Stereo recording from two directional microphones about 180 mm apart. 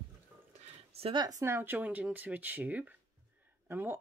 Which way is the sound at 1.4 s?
10° right (ahead or behind).